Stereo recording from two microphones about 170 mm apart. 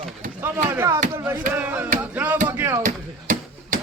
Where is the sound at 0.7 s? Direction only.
15° right (ahead or behind).